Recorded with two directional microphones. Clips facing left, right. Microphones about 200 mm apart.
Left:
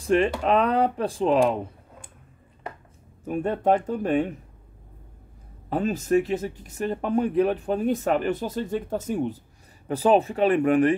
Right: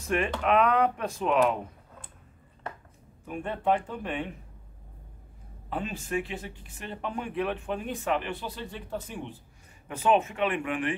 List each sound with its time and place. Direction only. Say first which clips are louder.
0.0 s speech: left 6 dB; 30° left (ahead or behind)
3.3 s speech: left 6 dB; 40° left (ahead or behind)
5.7 s speech: left 10 dB; 40° left (ahead or behind)